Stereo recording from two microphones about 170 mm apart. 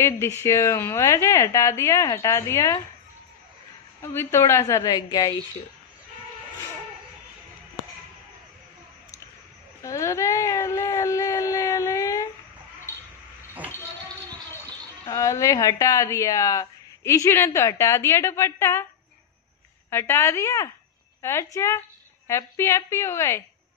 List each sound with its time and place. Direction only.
0.0 s a woman's voice: 15° left (ahead or behind)
4.0 s a woman's voice: 15° left (ahead or behind)
9.8 s a sound: 20° left (ahead or behind)
15.0 s a woman's voice: 20° left (ahead or behind)
19.9 s a woman's voice: 15° left (ahead or behind)